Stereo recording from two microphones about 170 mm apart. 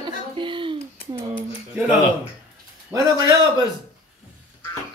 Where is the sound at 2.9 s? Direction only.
20° right (ahead or behind).